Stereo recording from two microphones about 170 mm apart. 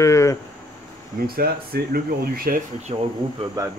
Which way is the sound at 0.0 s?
20° left (ahead or behind).